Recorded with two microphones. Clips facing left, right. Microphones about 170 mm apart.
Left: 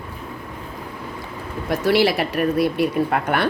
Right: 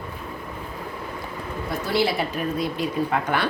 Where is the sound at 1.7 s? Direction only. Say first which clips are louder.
Left 6 dB; 75° left (ahead or behind); by 3.5 s 60° left (ahead or behind).